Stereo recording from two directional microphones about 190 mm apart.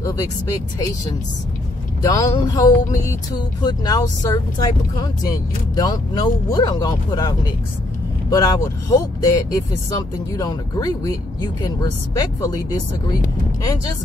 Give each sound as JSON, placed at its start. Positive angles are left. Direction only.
{"t": 2.0, "sound": "speech", "side_deg": 20}